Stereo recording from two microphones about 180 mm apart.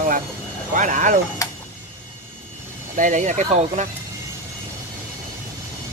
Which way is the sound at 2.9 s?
45° right (ahead or behind).